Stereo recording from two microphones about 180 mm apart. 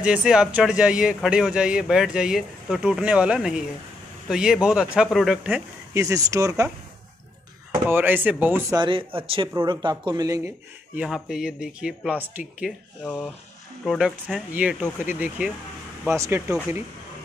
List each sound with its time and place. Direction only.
0.0 s speech: 5° right (ahead or behind)
5.9 s speech: 20° right (ahead or behind)
7.9 s speech: 10° right (ahead or behind)
8.7 s speech: 25° right (ahead or behind)
11.0 s speech: centre (ahead or behind)
13.0 s speech: 10° left (ahead or behind); by 16.5 s 15° right (ahead or behind)